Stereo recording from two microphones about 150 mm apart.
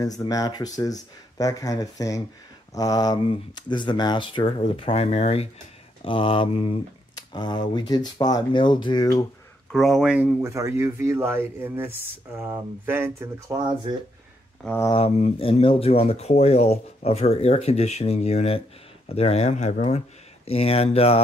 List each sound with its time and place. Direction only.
0.0 s speech: 25° left (ahead or behind)
9.7 s speech: centre (ahead or behind)
10.4 s speech: 20° right (ahead or behind)
15.0 s speech: 45° left (ahead or behind)